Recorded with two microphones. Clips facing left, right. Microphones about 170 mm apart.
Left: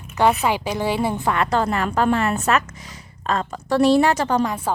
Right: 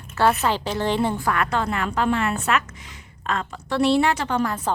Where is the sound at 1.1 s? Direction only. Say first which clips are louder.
Left 2 dB; 25° left (ahead or behind).